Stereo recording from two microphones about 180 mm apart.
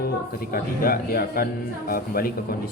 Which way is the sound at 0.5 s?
55° left (ahead or behind).